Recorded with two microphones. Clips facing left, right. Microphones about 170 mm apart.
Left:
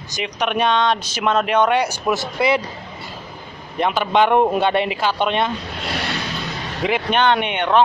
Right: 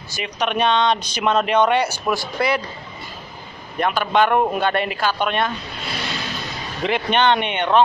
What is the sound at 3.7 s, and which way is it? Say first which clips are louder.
Speech: left 1 dB; 20° left (ahead or behind).